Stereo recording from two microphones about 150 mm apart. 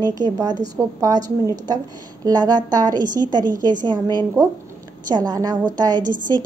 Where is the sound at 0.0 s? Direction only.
25° right (ahead or behind).